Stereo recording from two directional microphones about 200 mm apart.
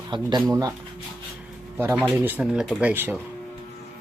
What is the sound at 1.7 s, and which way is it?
Speech, 10° right (ahead or behind).